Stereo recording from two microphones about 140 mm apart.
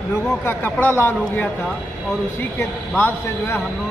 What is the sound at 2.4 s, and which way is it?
A man's voice, 15° left (ahead or behind).